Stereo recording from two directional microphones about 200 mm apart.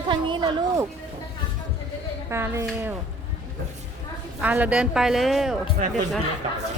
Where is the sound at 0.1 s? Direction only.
25° right (ahead or behind).